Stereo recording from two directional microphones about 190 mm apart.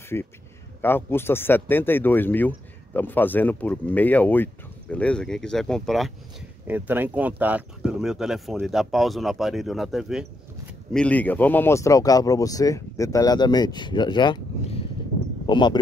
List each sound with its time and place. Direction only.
0.1 s speech: 15° left (ahead or behind)